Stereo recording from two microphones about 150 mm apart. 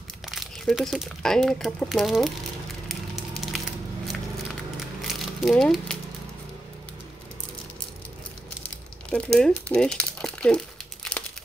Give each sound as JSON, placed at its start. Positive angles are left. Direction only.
{"t": 0.3, "sound": "speech", "side_deg": 0}
{"t": 2.9, "sound": "a sound", "side_deg": 0}
{"t": 5.0, "sound": "crumpling", "side_deg": 0}
{"t": 8.6, "sound": "crumpling", "side_deg": 5}